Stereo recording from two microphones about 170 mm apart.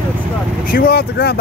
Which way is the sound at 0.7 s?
60° left (ahead or behind).